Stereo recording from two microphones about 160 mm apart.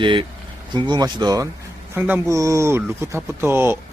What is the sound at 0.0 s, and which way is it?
Speech, 30° right (ahead or behind).